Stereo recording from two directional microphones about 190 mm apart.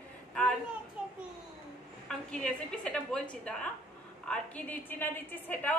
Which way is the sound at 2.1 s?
5° left (ahead or behind).